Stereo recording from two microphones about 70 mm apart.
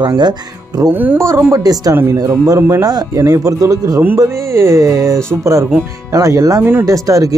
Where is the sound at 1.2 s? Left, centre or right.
Right.